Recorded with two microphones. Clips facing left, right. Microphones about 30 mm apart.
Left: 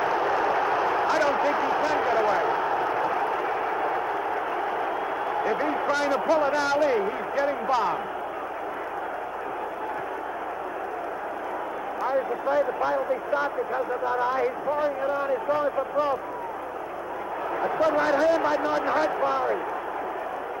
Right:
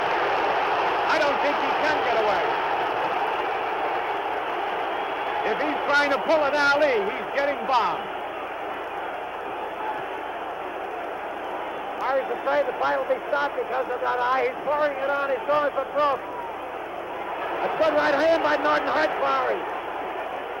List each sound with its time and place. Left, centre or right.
0.0 s a sound: right
12.0 s speech: right
17.6 s speech: right